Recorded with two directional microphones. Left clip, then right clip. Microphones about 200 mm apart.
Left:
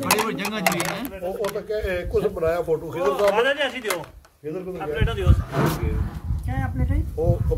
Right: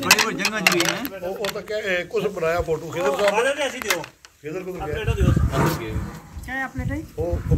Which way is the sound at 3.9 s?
60° left (ahead or behind).